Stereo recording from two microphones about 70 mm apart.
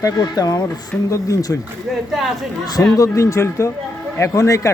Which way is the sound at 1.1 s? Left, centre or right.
Left.